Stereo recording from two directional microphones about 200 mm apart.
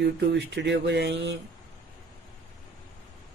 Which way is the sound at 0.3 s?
60° right (ahead or behind).